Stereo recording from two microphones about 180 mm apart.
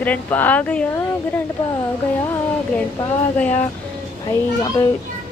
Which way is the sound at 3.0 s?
10° left (ahead or behind).